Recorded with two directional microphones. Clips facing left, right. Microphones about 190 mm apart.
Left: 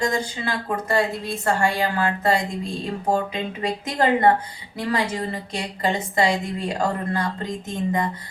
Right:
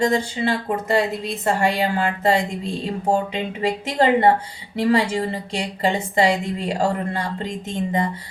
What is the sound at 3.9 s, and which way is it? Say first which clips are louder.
A woman's voice: right 2 dB; 25° right (ahead or behind).